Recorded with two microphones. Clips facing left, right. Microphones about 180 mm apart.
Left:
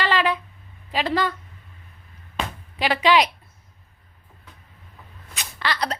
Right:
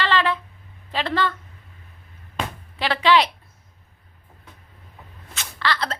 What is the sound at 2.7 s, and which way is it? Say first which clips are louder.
Speech: even; 15° left (ahead or behind).